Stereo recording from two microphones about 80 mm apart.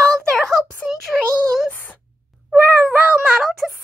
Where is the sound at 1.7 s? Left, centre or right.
Left.